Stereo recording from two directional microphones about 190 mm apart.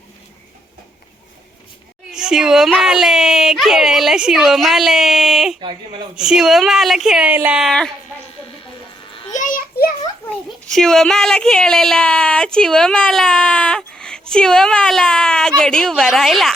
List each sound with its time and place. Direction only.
2.1 s speech: 5° right (ahead or behind)
5.5 s speech: 25° right (ahead or behind)
6.1 s speech: 5° right (ahead or behind)
9.3 s children playing: 45° left (ahead or behind)
10.7 s speech: centre (ahead or behind)